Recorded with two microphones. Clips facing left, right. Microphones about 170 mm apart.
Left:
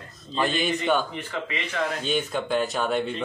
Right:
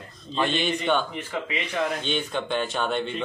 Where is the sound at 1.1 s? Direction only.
15° right (ahead or behind).